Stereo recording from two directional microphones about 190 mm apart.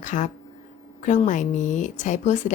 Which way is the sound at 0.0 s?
40° left (ahead or behind).